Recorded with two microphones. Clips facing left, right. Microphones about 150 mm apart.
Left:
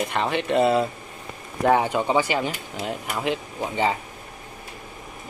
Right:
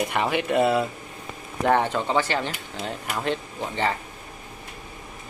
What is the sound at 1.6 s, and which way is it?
Speech, 10° left (ahead or behind).